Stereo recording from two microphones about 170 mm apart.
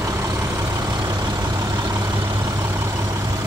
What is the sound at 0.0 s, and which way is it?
Vehicle, 20° right (ahead or behind).